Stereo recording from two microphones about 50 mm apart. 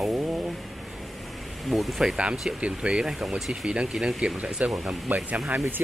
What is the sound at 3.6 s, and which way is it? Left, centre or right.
Speech, centre.